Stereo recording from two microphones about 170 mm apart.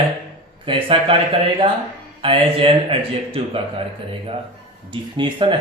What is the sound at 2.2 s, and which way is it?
Speech, 30° right (ahead or behind).